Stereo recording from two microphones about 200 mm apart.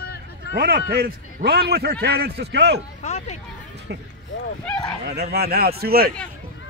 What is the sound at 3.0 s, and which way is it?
Speech, 35° left (ahead or behind).